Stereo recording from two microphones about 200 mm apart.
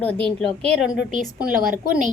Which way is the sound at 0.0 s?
5° left (ahead or behind).